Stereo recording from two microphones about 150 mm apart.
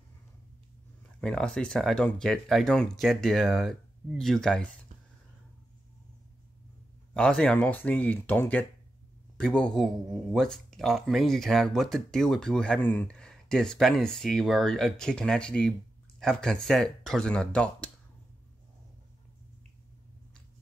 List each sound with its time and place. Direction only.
1.2 s speech: 5° left (ahead or behind)
7.2 s speech: 5° left (ahead or behind)